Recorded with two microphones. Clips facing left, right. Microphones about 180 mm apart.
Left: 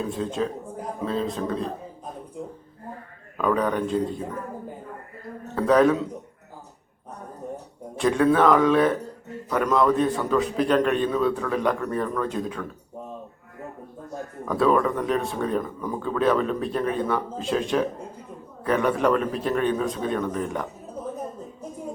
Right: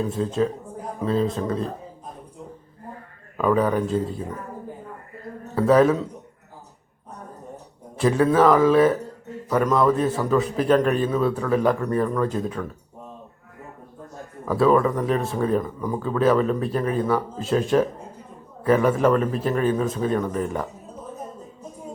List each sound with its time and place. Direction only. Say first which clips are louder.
0.0 s speech: right 4 dB; centre (ahead or behind)
3.3 s speech: right 3 dB; 5° right (ahead or behind)
5.5 s speech: right 2 dB; 5° right (ahead or behind)
7.9 s speech: right 1 dB; 5° right (ahead or behind)
14.4 s speech: right 3 dB; centre (ahead or behind)